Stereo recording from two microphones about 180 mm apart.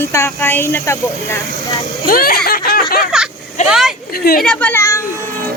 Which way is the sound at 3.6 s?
5° right (ahead or behind).